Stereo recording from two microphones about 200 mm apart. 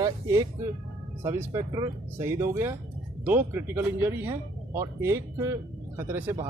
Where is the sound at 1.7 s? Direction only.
15° right (ahead or behind).